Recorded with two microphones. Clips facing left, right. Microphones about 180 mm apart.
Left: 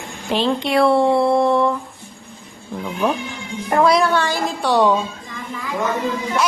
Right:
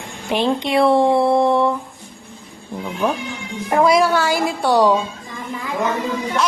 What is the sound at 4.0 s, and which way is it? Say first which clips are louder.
Speech: right 2 dB; 10° right (ahead or behind).